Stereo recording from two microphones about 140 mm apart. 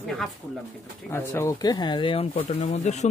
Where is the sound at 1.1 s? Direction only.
20° left (ahead or behind).